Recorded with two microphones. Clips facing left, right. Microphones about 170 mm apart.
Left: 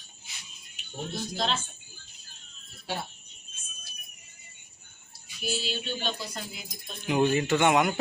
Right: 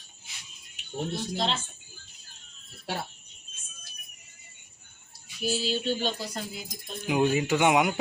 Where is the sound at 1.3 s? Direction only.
30° right (ahead or behind).